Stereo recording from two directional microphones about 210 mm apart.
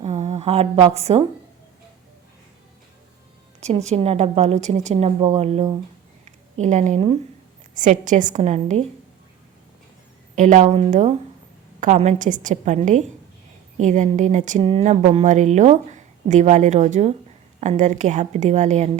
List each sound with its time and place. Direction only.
0.0 s a sound: 30° right (ahead or behind)
0.9 s speech: 30° right (ahead or behind)
3.8 s speech: 30° right (ahead or behind)
10.3 s speech: 35° right (ahead or behind)